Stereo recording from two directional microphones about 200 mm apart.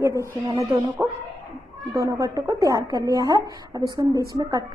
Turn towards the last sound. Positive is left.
turn(degrees=-20)  # may be behind; listen again after turning